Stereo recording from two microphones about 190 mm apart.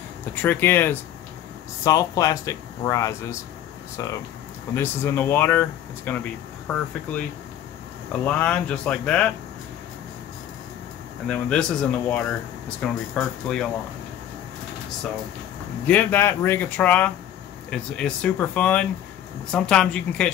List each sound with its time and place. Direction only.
0.3 s speech: 10° left (ahead or behind)
11.2 s speech: 5° left (ahead or behind)
15.9 s speech: 10° left (ahead or behind)